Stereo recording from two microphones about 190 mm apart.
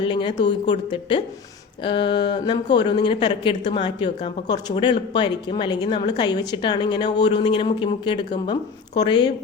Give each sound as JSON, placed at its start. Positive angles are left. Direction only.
{"t": 0.0, "sound": "speech", "side_deg": 25}
{"t": 0.3, "sound": "speech", "side_deg": 65}
{"t": 0.7, "sound": "a woman's voice", "side_deg": 25}